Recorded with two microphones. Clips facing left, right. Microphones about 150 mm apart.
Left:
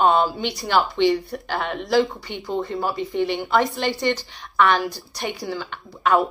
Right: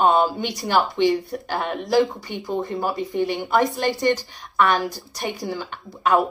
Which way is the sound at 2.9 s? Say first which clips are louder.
Left 1 dB; 45° right (ahead or behind).